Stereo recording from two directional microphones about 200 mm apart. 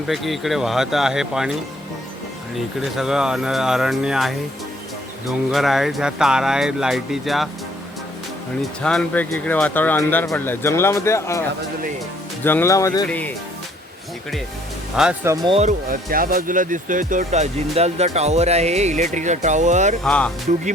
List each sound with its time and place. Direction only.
0.1 s speech: centre (ahead or behind)
2.8 s speech: centre (ahead or behind)
5.5 s speech: centre (ahead or behind)
8.8 s speech: 5° left (ahead or behind)
12.5 s speech: 10° left (ahead or behind)
15.0 s speech: centre (ahead or behind)
15.4 s speech: 30° right (ahead or behind)
15.9 s speech: 45° right (ahead or behind)
20.1 s speech: 5° left (ahead or behind)